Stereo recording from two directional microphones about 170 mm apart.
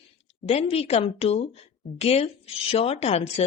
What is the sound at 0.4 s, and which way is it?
A woman's voice, 35° left (ahead or behind).